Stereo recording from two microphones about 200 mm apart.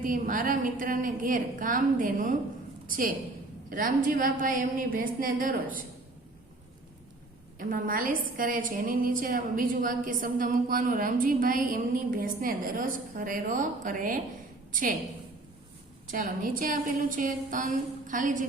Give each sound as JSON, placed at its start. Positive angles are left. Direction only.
{"t": 0.0, "sound": "a woman's voice", "side_deg": -40}
{"t": 7.6, "sound": "a woman's voice", "side_deg": -45}
{"t": 16.0, "sound": "a woman's voice", "side_deg": -40}